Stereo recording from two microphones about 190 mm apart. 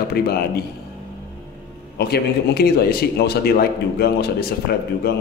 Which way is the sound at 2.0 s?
55° left (ahead or behind).